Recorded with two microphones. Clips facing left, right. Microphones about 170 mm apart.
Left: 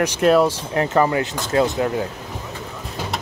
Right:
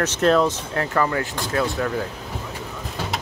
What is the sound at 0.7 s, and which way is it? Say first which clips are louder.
Speech: left 5 dB; 20° left (ahead or behind).